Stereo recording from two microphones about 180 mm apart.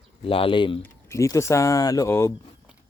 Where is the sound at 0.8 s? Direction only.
15° left (ahead or behind).